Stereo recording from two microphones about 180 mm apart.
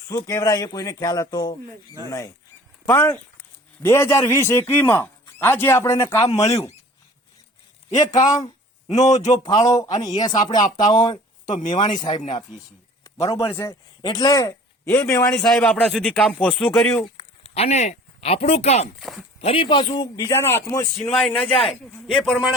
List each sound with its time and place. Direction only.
0.1 s a man's voice: 15° left (ahead or behind)
7.9 s a man's voice: 20° left (ahead or behind)
8.9 s a man's voice: 40° left (ahead or behind)
9.4 s a man's voice: 20° left (ahead or behind)
12.1 s a man's voice: 40° left (ahead or behind)
13.1 s a man's voice: 15° left (ahead or behind)
15.3 s speech: centre (ahead or behind)
17.2 s speech: 35° left (ahead or behind)
18.9 s speech: centre (ahead or behind)
19.4 s a man's voice: 30° left (ahead or behind); by 21.1 s 15° left (ahead or behind)
21.1 s speech: centre (ahead or behind)
21.4 s a man's voice: 30° left (ahead or behind)
22.0 s speech: 5° left (ahead or behind)